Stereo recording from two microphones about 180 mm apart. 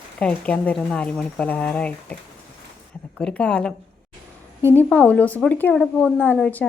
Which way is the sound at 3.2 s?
5° left (ahead or behind).